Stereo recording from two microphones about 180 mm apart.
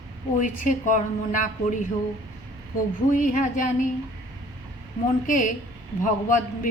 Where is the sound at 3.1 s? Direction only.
45° left (ahead or behind).